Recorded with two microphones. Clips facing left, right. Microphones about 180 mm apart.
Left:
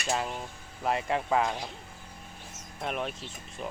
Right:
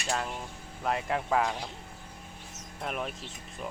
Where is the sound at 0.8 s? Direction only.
Centre (ahead or behind).